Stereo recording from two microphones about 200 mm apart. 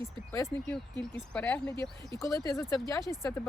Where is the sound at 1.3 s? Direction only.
5° left (ahead or behind).